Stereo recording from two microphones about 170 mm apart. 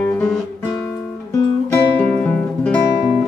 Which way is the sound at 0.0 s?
10° left (ahead or behind).